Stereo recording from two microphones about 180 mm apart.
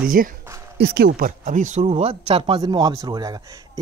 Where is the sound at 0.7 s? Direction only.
65° right (ahead or behind); by 3.8 s 20° right (ahead or behind).